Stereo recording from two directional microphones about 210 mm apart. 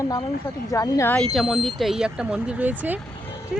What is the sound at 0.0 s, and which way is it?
Speech, 15° left (ahead or behind).